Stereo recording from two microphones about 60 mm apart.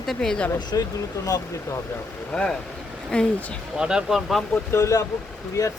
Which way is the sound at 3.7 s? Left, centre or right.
Centre.